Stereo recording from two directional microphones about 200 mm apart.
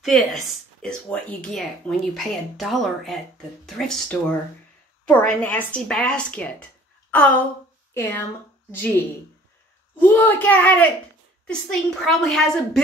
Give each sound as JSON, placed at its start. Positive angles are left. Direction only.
{"t": 0.0, "sound": "speech", "side_deg": 0}
{"t": 9.9, "sound": "speech", "side_deg": 10}